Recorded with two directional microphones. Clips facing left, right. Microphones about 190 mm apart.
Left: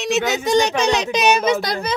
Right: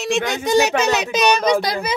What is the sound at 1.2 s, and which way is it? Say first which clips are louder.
Speech: right 1 dB; 5° left (ahead or behind).